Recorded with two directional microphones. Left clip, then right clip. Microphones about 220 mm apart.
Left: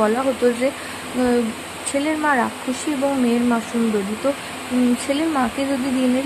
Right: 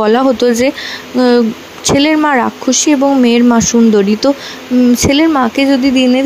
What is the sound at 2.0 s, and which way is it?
Speech, 40° right (ahead or behind).